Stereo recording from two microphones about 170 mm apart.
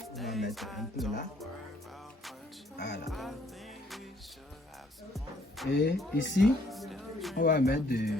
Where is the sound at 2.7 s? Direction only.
80° left.